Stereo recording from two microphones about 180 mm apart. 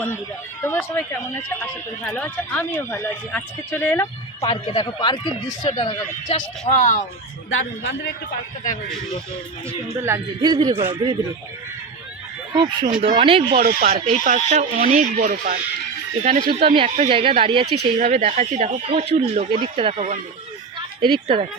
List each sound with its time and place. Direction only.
0.6 s speech: 10° left (ahead or behind)
4.4 s speech: 30° left (ahead or behind)
6.7 s speech: 45° left (ahead or behind)
7.5 s a man's voice: 80° left
10.0 s a man's voice: 20° right (ahead or behind)
13.0 s speech: 30° right (ahead or behind); by 15.5 s 45° right (ahead or behind)
16.4 s a man's voice: 30° right (ahead or behind)
17.7 s speech: 60° right (ahead or behind)
18.1 s a man's voice: 40° right (ahead or behind)